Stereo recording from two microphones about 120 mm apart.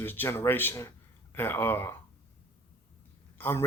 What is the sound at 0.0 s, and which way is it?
Speech, 20° left (ahead or behind).